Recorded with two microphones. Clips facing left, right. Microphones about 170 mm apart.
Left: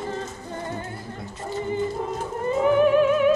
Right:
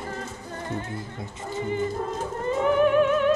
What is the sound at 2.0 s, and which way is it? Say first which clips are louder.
Music: left 1 dB; 5° left (ahead or behind).